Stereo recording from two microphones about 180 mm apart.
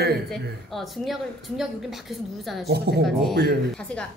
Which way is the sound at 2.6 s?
65° right (ahead or behind).